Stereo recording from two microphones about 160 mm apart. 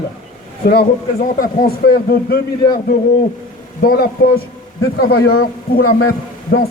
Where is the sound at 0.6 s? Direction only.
70° left (ahead or behind).